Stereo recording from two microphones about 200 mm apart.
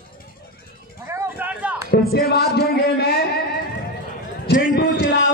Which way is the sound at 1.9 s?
50° left (ahead or behind).